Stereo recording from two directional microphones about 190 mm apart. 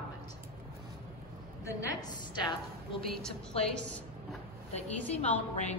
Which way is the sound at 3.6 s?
30° left (ahead or behind).